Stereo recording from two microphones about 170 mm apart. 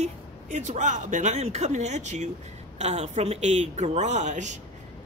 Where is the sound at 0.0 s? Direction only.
45° right (ahead or behind).